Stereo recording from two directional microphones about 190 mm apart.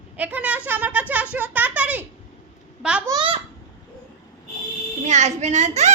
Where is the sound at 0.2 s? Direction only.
10° right (ahead or behind).